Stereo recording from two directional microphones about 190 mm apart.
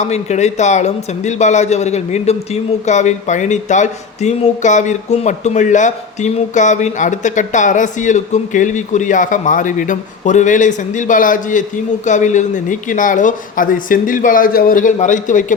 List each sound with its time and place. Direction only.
0.0 s a man's voice: 35° left (ahead or behind)